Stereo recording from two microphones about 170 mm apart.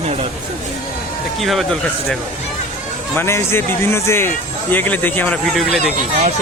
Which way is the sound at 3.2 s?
15° left (ahead or behind).